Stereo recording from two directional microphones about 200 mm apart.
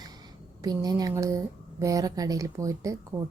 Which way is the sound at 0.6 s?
20° right (ahead or behind).